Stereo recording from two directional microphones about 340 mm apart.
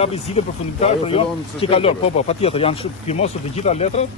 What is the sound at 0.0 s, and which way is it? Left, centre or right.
Speech, centre.